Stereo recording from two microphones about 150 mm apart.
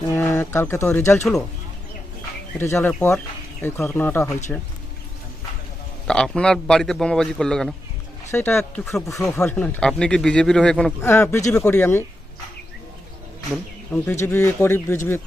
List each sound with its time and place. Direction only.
0.2 s speech: 15° left (ahead or behind)
2.6 s speech: 15° left (ahead or behind)
6.1 s speech: 5° left (ahead or behind)
8.3 s speech: 15° left (ahead or behind)
11.0 s speech: 15° left (ahead or behind)
13.9 s speech: 15° left (ahead or behind)